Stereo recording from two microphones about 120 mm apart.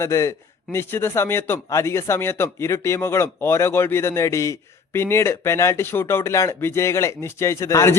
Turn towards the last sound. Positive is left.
turn(degrees=25)  # may be behind; listen again after turning